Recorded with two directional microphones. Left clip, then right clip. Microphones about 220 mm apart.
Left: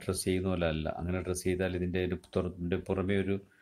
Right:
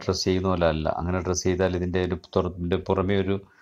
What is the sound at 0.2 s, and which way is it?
Speech, centre (ahead or behind).